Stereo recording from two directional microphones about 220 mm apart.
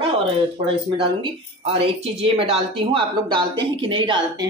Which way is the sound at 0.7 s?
20° right (ahead or behind).